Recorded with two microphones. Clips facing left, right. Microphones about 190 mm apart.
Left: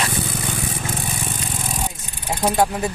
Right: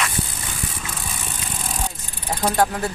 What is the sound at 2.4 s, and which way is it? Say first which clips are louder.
Speech: left 1 dB; 10° left (ahead or behind).